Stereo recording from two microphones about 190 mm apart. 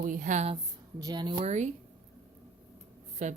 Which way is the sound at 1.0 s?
20° right (ahead or behind).